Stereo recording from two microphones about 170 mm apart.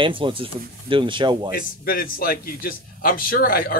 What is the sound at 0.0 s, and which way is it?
Speech, 30° right (ahead or behind).